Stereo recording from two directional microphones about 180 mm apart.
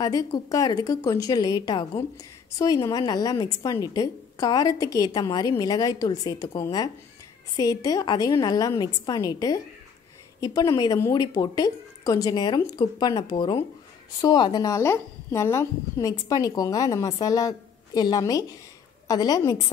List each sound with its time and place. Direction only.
0.0 s a woman's voice: 20° left (ahead or behind)